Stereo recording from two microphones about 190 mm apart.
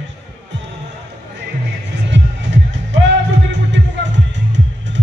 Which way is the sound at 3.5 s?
70° right (ahead or behind).